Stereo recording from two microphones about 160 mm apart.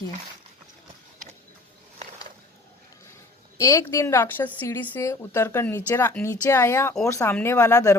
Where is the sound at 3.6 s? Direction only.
20° left (ahead or behind).